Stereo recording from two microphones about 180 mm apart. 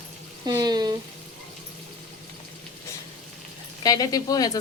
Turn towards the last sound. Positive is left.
turn(degrees=20)  # may be behind; listen again after turning